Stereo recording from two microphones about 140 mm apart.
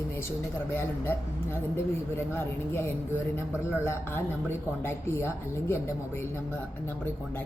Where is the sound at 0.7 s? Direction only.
15° left (ahead or behind).